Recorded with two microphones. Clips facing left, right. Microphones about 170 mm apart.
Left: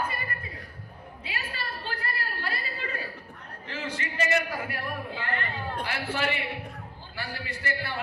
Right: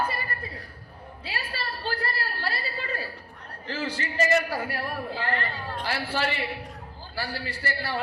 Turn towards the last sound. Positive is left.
turn(degrees=-35)  # may be behind; listen again after turning